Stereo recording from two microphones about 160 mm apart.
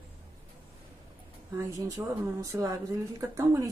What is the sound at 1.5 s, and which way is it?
Speech, 20° right (ahead or behind).